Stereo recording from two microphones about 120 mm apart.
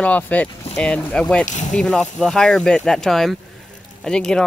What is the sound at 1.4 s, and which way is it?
Speech, 90° left.